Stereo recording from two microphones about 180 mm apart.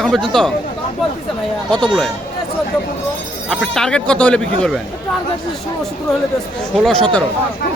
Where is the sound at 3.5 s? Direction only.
Centre (ahead or behind).